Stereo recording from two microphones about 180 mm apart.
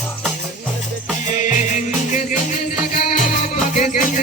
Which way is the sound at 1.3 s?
45° left (ahead or behind).